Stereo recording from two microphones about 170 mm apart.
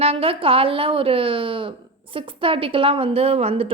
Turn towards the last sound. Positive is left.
turn(degrees=-35)  # may be behind; listen again after turning